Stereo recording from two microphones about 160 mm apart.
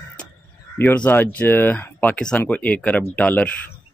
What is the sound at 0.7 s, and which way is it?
Speech, 10° left (ahead or behind).